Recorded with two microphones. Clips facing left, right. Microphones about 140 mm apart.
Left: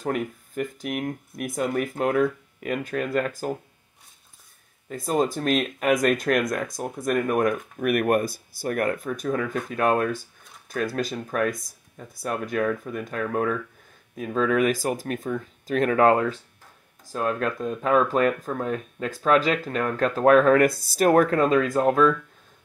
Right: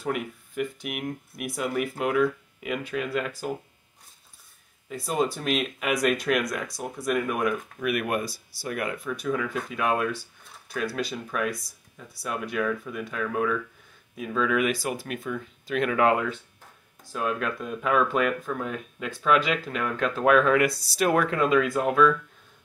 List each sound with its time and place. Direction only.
0.0 s speech: 40° left (ahead or behind)
4.8 s speech: 45° left (ahead or behind)